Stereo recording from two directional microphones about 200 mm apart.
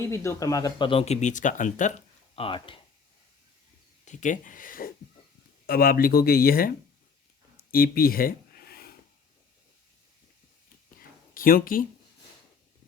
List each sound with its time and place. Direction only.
0.0 s speech: 15° left (ahead or behind)
4.0 s speech: 40° left (ahead or behind)
7.5 s a sound: 45° left (ahead or behind)
11.3 s speech: 45° left (ahead or behind)